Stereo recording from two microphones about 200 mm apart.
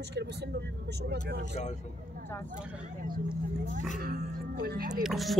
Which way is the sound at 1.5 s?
35° left (ahead or behind).